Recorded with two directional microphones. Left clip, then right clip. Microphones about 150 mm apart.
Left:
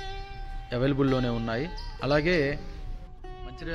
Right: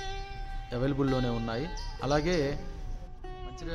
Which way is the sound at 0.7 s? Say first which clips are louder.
Left 4 dB; 10° left (ahead or behind).